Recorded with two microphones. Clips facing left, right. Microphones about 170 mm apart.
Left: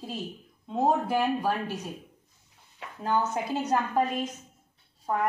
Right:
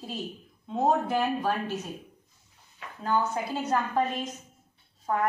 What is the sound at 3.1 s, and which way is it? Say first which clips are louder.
A woman's voice: even; 20° left (ahead or behind).